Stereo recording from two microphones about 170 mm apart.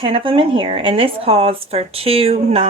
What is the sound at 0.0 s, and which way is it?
A woman's voice, 30° right (ahead or behind).